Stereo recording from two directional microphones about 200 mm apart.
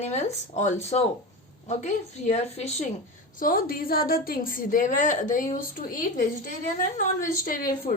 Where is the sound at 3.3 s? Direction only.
45° left (ahead or behind).